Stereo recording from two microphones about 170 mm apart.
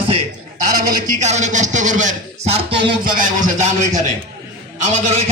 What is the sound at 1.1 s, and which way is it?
Speech, 45° right (ahead or behind).